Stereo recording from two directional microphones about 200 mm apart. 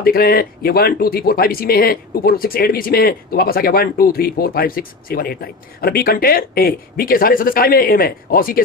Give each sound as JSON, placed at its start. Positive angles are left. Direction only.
{"t": 0.0, "sound": "speech", "side_deg": 50}